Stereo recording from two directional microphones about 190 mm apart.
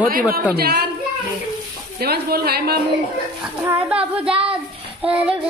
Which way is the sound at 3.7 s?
5° right (ahead or behind).